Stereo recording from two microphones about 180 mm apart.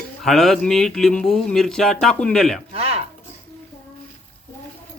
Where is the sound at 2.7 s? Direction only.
35° right (ahead or behind).